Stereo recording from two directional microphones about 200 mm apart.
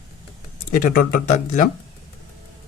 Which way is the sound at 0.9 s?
45° left (ahead or behind).